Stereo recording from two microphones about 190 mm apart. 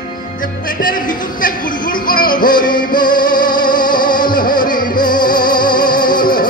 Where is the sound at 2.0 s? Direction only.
50° left (ahead or behind).